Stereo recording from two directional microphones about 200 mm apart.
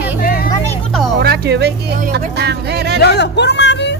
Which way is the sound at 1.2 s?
55° right (ahead or behind).